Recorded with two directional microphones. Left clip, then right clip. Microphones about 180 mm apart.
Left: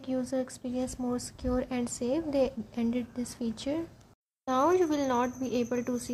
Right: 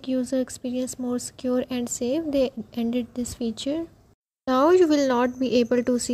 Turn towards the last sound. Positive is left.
turn(degrees=-35)  # may be behind; listen again after turning